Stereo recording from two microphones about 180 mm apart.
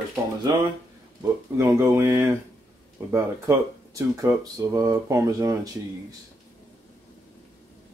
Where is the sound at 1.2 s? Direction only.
15° right (ahead or behind).